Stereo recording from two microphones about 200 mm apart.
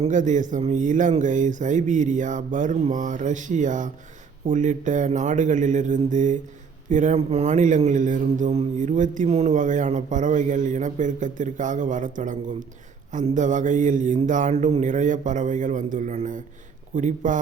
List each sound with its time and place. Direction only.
0.0 s a man's voice: 40° right (ahead or behind)